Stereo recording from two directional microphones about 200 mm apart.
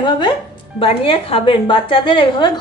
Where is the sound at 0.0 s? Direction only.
20° left (ahead or behind).